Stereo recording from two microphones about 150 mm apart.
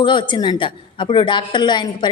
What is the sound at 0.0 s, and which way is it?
Speech, 30° left (ahead or behind).